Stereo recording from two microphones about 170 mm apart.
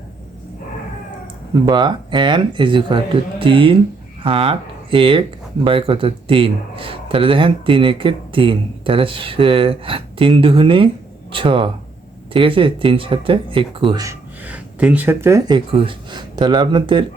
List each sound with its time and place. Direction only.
1.6 s a man's voice: 25° right (ahead or behind)
14.4 s speech: 10° right (ahead or behind); by 17.1 s 30° right (ahead or behind)